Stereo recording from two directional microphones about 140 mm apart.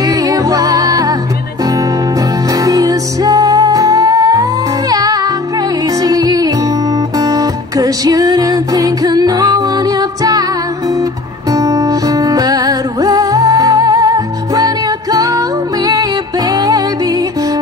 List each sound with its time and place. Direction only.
0.0 s music: 25° right (ahead or behind)
2.5 s music: 25° right (ahead or behind)
11.5 s music: 25° right (ahead or behind)